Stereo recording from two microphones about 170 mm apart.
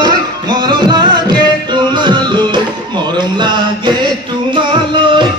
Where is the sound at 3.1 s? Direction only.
25° right (ahead or behind).